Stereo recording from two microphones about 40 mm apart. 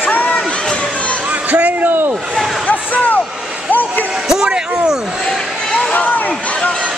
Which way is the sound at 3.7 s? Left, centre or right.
Left.